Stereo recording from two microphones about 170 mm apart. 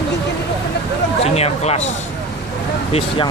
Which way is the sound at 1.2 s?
40° left (ahead or behind).